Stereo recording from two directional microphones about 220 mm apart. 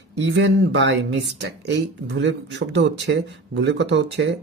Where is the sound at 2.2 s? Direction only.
55° right (ahead or behind).